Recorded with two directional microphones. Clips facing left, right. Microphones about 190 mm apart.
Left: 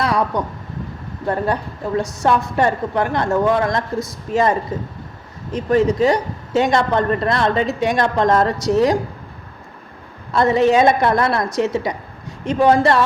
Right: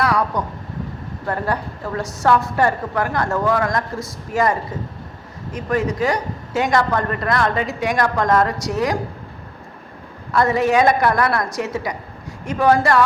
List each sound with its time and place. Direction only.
0.0 s a woman's voice: 25° left (ahead or behind)
5.5 s a woman's voice: 25° left (ahead or behind)
10.3 s a woman's voice: 25° left (ahead or behind)